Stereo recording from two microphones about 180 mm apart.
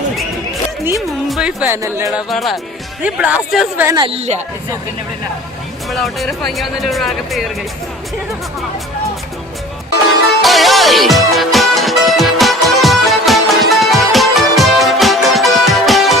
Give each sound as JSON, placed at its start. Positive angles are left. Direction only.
{"t": 1.3, "sound": "speech", "side_deg": -5}
{"t": 2.3, "sound": "speech", "side_deg": 0}
{"t": 3.8, "sound": "speech", "side_deg": -25}
{"t": 5.9, "sound": "speech", "side_deg": 0}
{"t": 10.4, "sound": "music", "side_deg": 0}